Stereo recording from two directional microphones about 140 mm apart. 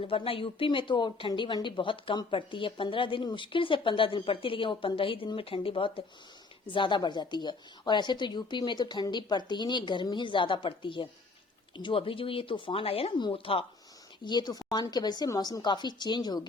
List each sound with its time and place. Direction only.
0.0 s speech: 40° left (ahead or behind)
14.3 s speech: 30° left (ahead or behind)